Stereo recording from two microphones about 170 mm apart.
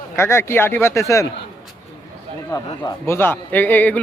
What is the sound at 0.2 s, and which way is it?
A man's voice, 15° left (ahead or behind).